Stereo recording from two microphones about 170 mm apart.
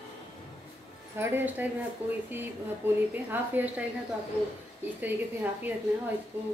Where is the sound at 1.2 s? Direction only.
10° right (ahead or behind).